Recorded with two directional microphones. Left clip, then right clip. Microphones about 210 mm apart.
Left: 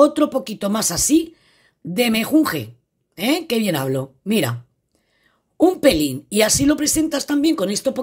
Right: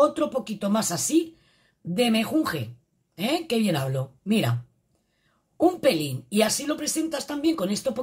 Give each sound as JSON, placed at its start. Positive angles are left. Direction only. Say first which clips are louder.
{"t": 0.0, "sound": "a woman's voice", "louder": "left 7 dB", "side_deg": 45}
{"t": 5.6, "sound": "a woman's voice", "louder": "left 6 dB", "side_deg": 45}